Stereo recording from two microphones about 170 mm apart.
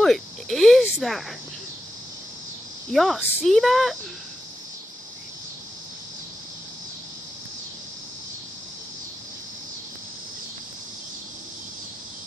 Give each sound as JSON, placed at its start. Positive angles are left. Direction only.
{"t": 0.0, "sound": "a sound", "side_deg": 0}
{"t": 0.9, "sound": "speech", "side_deg": 0}
{"t": 2.9, "sound": "speech", "side_deg": 0}